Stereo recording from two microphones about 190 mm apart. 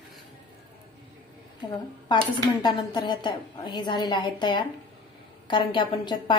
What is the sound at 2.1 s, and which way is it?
A woman's voice, 20° left (ahead or behind).